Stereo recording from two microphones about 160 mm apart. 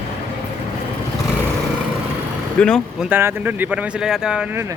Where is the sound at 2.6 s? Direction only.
5° left (ahead or behind).